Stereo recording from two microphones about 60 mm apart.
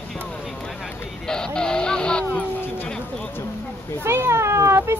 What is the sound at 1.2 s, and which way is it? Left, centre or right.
Vehicle, centre.